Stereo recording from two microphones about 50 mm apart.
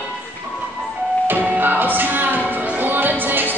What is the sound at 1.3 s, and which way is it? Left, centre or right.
Music, right.